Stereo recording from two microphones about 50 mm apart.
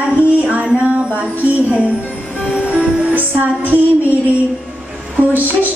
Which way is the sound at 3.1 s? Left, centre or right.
Right.